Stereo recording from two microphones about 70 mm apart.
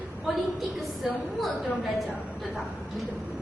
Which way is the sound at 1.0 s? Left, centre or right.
Centre.